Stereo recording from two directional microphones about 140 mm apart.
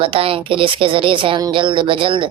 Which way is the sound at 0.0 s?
40° right (ahead or behind).